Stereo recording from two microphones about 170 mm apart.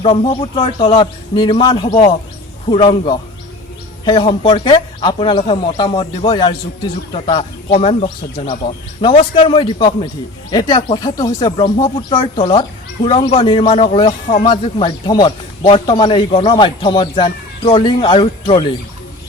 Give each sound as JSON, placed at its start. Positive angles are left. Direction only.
{"t": 0.0, "sound": "a man's voice", "side_deg": 30}